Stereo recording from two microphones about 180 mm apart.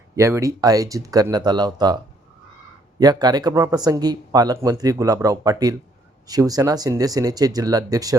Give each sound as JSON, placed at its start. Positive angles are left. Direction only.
{"t": 0.2, "sound": "speech", "side_deg": -15}
{"t": 3.0, "sound": "speech", "side_deg": -25}